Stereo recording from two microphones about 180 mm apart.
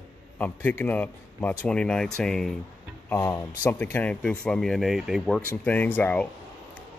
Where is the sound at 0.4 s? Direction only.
10° left (ahead or behind).